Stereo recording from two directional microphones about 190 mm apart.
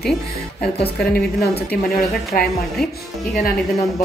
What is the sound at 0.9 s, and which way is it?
Speech, 55° left (ahead or behind).